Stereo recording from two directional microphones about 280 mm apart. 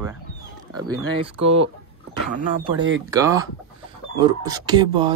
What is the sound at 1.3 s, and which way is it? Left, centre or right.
Speech, right.